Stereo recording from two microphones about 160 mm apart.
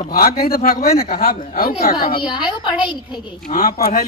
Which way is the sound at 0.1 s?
65° left (ahead or behind).